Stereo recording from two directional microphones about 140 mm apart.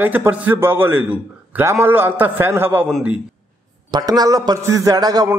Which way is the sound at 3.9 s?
30° right (ahead or behind).